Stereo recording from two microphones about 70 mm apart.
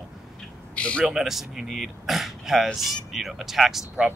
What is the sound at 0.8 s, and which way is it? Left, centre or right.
Speech, centre.